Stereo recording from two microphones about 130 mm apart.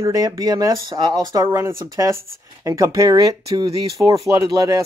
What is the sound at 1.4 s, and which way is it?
Speech, 20° right (ahead or behind).